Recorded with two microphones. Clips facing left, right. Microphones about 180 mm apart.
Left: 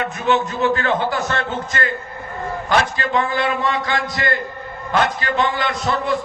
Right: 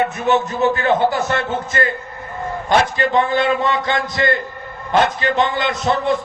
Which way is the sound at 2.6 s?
20° right (ahead or behind).